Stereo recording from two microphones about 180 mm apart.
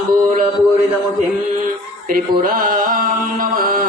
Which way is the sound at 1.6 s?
50° right (ahead or behind).